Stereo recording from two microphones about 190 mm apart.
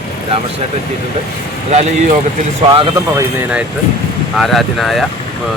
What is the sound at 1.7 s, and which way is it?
Speech, 35° right (ahead or behind).